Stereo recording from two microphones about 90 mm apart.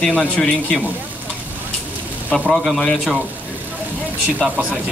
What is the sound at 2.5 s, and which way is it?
Speech, 5° left (ahead or behind).